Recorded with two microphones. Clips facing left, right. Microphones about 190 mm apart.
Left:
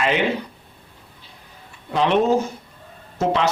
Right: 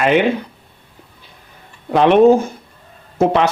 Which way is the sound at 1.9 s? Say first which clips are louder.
Right 8 dB; 55° right (ahead or behind).